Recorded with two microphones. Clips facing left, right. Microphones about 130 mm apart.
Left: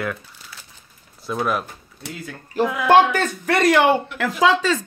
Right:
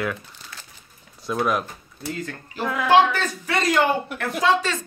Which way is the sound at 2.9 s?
55° left (ahead or behind).